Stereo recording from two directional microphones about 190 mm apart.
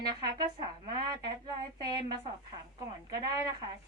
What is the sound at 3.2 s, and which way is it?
Speech, 20° right (ahead or behind).